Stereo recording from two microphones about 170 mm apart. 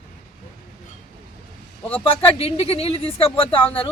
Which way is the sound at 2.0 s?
35° left (ahead or behind).